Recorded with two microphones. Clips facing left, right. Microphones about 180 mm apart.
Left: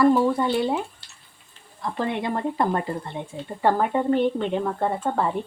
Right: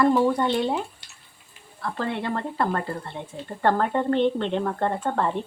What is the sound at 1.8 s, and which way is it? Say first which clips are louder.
Speech: left 2 dB; 15° left (ahead or behind).